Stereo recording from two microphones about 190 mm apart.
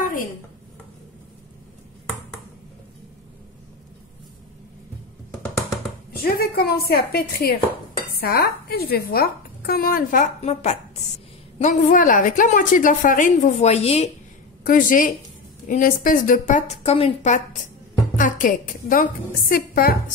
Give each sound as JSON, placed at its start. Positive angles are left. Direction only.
{"t": 6.1, "sound": "a woman's voice", "side_deg": 50}
{"t": 14.6, "sound": "a woman's voice", "side_deg": 45}